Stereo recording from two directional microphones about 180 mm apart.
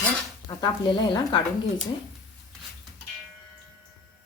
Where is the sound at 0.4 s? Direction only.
25° left (ahead or behind).